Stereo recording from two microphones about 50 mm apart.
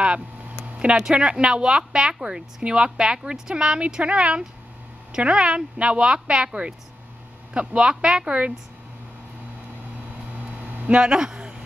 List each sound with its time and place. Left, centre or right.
0.0 s speech: right
10.6 s a sound: right
10.9 s speech: centre